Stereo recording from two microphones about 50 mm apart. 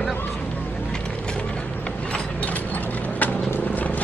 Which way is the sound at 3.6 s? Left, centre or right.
Left.